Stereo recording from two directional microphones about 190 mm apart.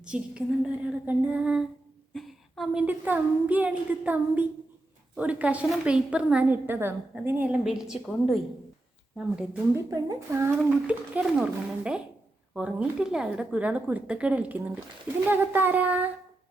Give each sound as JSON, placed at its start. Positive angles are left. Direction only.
{"t": 0.0, "sound": "child singing", "side_deg": -5}
{"t": 2.1, "sound": "a woman's voice", "side_deg": 0}
{"t": 9.1, "sound": "child singing", "side_deg": -5}
{"t": 9.9, "sound": "a woman's voice", "side_deg": -15}